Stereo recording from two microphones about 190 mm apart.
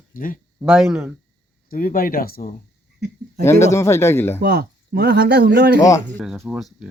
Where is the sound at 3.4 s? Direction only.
15° left (ahead or behind).